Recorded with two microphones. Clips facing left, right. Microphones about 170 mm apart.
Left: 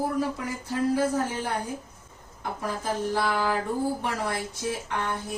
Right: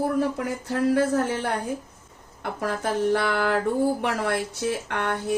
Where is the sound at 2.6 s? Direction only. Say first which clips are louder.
Right 5 dB; 70° right (ahead or behind).